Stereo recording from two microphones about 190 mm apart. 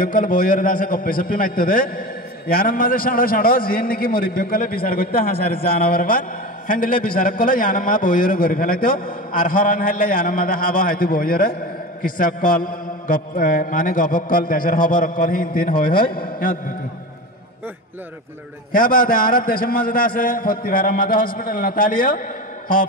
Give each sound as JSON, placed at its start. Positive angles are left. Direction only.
{"t": 0.0, "sound": "a man's voice", "side_deg": 45}
{"t": 18.7, "sound": "a man's voice", "side_deg": 45}